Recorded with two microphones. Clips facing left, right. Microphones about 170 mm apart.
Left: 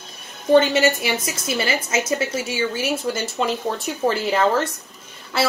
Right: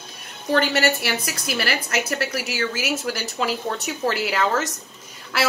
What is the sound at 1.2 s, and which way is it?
A woman's voice, 25° left (ahead or behind).